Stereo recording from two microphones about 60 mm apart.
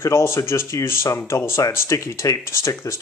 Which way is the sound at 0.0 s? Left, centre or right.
Left.